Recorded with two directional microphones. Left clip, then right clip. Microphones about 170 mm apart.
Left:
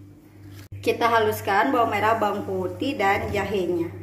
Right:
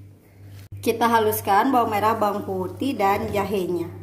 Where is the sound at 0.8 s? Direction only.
65° right (ahead or behind).